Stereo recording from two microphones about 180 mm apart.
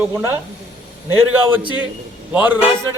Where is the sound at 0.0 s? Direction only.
15° right (ahead or behind).